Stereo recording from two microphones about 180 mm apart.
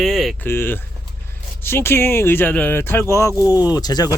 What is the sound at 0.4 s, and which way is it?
Speech, 10° left (ahead or behind).